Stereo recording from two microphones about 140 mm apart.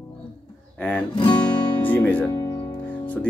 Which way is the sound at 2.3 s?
25° left (ahead or behind).